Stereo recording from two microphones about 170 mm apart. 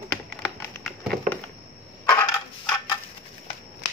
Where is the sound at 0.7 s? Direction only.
5° left (ahead or behind).